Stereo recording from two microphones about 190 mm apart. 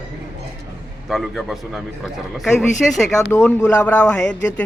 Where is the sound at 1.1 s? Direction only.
Centre (ahead or behind).